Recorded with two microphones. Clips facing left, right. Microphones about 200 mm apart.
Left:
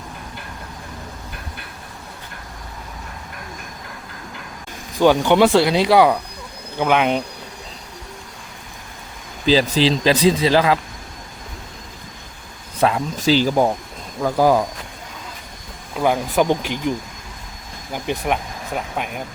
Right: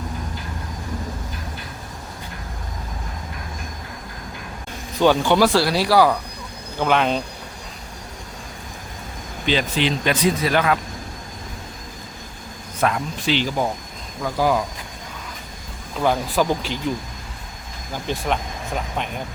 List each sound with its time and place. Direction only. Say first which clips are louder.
4.9 s speech: left 2 dB; 15° left (ahead or behind)
9.5 s speech: left 5 dB; 35° left (ahead or behind)
12.8 s speech: left 3 dB; 25° left (ahead or behind)
13.1 s speech: left 6 dB; 40° left (ahead or behind)
16.0 s speech: left 2 dB; 15° left (ahead or behind)
17.9 s speech: left 2 dB; 15° left (ahead or behind)